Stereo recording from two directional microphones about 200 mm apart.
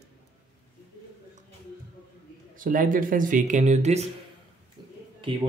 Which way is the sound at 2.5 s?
45° right (ahead or behind).